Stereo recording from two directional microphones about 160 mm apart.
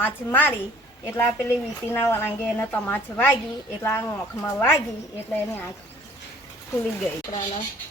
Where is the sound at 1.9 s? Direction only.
15° left (ahead or behind).